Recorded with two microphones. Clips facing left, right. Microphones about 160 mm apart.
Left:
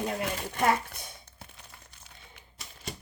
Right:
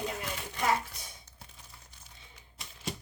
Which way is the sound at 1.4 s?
65° left (ahead or behind).